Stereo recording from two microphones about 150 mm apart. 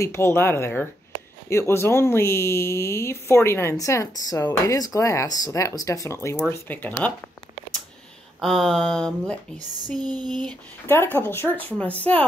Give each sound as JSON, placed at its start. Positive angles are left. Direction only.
{"t": 0.0, "sound": "speech", "side_deg": 15}
{"t": 8.4, "sound": "speech", "side_deg": 0}
{"t": 10.0, "sound": "a sound", "side_deg": -30}
{"t": 10.9, "sound": "speech", "side_deg": 15}